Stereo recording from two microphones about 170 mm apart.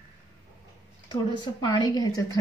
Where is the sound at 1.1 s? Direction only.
25° left (ahead or behind).